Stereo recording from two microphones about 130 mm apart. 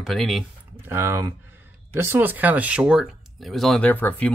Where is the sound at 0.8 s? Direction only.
20° right (ahead or behind).